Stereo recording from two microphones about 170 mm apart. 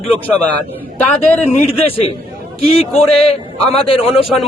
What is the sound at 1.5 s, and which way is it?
Speech, 40° left (ahead or behind).